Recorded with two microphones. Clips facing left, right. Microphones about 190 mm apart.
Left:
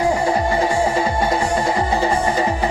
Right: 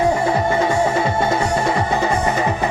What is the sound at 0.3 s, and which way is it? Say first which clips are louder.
Music: right 1 dB; 30° left (ahead or behind).